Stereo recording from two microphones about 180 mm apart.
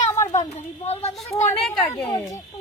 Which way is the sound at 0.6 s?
35° left (ahead or behind).